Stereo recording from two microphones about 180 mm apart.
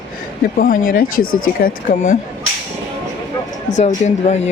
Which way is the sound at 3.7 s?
40° left (ahead or behind).